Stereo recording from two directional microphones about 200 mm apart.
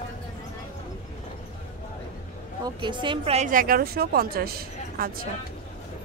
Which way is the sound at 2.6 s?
25° right (ahead or behind).